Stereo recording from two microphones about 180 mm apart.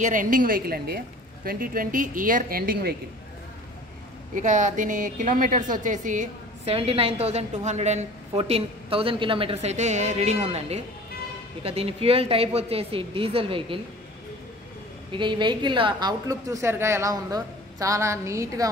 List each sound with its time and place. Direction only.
0.0 s a woman's voice: 45° right (ahead or behind)
4.4 s a woman's voice: 45° right (ahead or behind)
15.1 s a woman's voice: 25° right (ahead or behind)